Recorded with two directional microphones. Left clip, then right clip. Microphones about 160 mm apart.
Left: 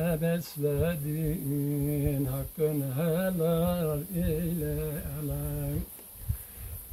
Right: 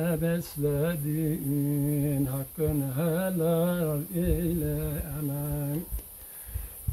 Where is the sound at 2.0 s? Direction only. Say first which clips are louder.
Right 2 dB; 15° left (ahead or behind).